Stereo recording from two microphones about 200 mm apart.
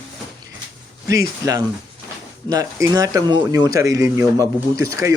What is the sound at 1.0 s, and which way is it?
Speech, 15° right (ahead or behind).